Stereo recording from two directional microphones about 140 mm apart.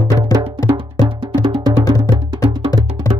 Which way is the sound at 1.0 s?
30° right (ahead or behind).